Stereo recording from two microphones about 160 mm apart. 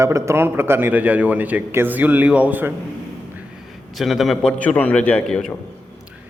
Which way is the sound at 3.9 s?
Centre (ahead or behind).